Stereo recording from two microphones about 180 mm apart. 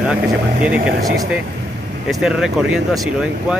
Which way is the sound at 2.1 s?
Centre (ahead or behind).